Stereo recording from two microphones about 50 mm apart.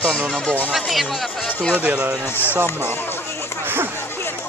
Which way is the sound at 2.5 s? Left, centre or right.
Right.